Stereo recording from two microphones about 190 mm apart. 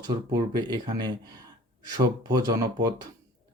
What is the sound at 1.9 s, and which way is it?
Speech, 20° right (ahead or behind).